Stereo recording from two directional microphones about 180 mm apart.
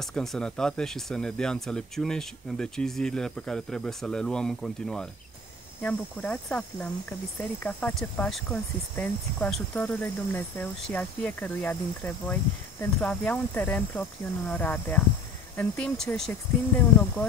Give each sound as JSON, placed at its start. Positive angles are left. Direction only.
{"t": 0.0, "sound": "speech", "side_deg": 0}